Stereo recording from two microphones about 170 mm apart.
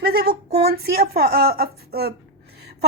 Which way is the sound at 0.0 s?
65° right (ahead or behind).